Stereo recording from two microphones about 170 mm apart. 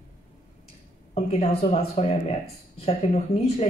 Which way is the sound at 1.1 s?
35° left (ahead or behind).